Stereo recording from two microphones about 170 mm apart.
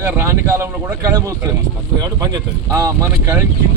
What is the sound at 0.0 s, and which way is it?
A man's voice, 15° right (ahead or behind).